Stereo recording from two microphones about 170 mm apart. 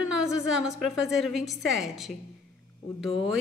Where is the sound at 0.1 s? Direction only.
5° right (ahead or behind).